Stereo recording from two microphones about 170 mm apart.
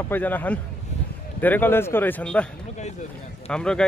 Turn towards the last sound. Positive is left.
turn(degrees=5)  # may be behind; listen again after turning